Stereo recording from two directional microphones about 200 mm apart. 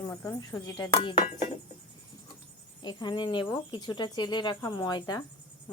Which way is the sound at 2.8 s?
20° left (ahead or behind).